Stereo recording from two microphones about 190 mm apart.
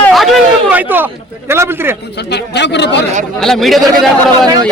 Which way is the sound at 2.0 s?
60° left (ahead or behind).